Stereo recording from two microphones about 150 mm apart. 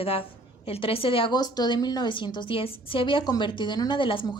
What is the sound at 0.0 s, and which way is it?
A woman's voice, 40° left (ahead or behind).